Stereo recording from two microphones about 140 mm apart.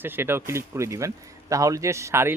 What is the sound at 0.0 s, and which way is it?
Speech, 15° right (ahead or behind).